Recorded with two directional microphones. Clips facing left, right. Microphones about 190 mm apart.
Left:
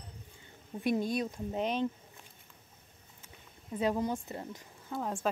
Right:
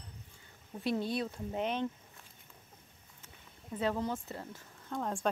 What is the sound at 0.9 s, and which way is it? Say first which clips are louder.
Speech: left 3 dB; 15° left (ahead or behind).